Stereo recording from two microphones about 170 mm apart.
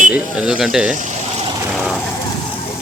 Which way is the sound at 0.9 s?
50° right (ahead or behind).